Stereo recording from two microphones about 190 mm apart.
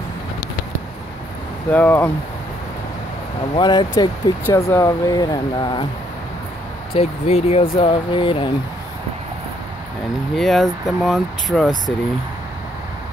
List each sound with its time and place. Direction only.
1.7 s speech: 10° left (ahead or behind)
3.5 s speech: 20° left (ahead or behind)
6.9 s speech: 30° left (ahead or behind)
10.3 s speech: centre (ahead or behind)